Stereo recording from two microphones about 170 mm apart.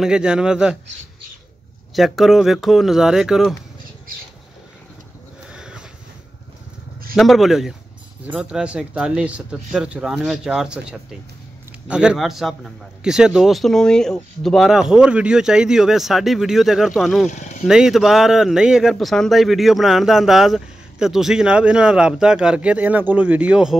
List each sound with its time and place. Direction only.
0.0 s a man's voice: 5° right (ahead or behind)
2.0 s a man's voice: centre (ahead or behind)
5.5 s a sound: 5° right (ahead or behind)
7.2 s a man's voice: centre (ahead or behind)
17.3 s speech: 45° left (ahead or behind)
17.6 s a man's voice: 5° right (ahead or behind)